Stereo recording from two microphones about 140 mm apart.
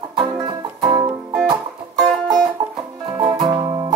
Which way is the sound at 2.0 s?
Centre (ahead or behind).